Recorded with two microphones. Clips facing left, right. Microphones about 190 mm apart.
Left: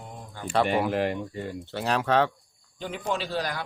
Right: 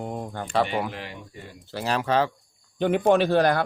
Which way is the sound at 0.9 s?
50° left (ahead or behind).